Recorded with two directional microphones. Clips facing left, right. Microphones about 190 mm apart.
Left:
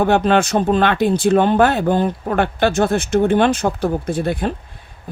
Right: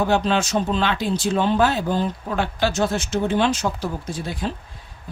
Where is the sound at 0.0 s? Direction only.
55° left (ahead or behind).